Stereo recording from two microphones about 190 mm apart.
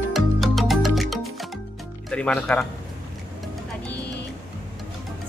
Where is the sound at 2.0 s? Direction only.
5° left (ahead or behind).